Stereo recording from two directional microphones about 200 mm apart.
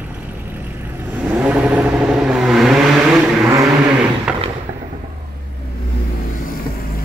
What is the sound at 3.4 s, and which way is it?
Vehicle, 15° right (ahead or behind).